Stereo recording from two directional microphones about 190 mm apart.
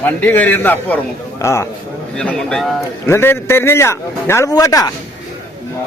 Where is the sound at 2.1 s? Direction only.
5° left (ahead or behind).